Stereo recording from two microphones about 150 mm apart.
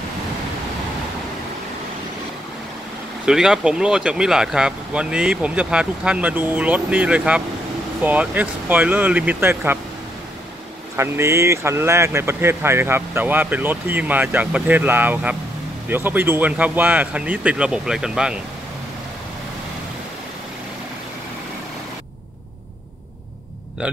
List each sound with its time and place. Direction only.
3.3 s speech: 5° right (ahead or behind)
11.0 s speech: 20° right (ahead or behind)